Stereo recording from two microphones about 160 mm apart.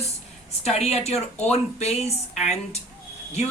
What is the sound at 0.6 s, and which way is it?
Speech, 40° left (ahead or behind).